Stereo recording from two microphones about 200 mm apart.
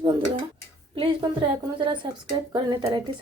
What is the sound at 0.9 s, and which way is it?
Speech, 25° right (ahead or behind).